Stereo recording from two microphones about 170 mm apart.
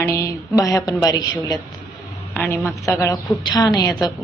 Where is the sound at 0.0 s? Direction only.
15° left (ahead or behind).